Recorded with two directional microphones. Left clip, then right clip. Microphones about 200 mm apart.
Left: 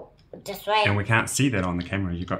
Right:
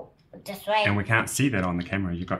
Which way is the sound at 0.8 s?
5° left (ahead or behind).